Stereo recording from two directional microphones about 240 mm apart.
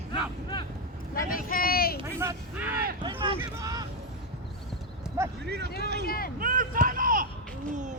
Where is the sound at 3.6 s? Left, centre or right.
Centre.